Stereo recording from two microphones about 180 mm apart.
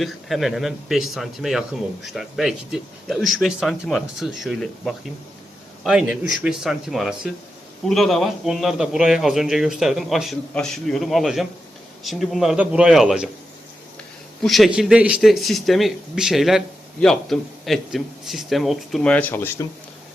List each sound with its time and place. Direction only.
0.0 s speech: centre (ahead or behind)
14.4 s speech: centre (ahead or behind)